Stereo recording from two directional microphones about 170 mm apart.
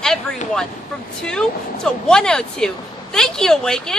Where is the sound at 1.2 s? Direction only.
5° left (ahead or behind).